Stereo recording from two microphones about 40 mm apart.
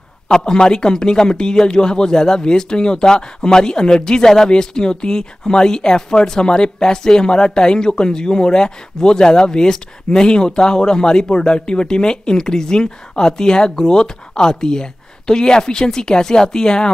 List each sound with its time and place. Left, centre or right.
0.3 s speech: centre